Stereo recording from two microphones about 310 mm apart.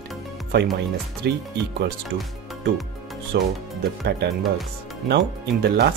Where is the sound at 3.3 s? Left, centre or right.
Right.